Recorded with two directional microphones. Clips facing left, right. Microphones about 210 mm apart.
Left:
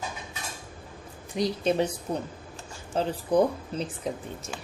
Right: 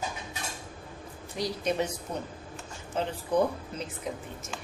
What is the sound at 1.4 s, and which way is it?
Speech, 30° left (ahead or behind).